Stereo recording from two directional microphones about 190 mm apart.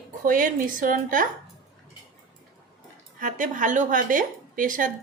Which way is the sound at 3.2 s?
45° right (ahead or behind).